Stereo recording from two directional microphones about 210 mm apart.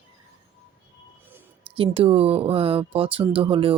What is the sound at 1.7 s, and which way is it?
Speech, 25° right (ahead or behind).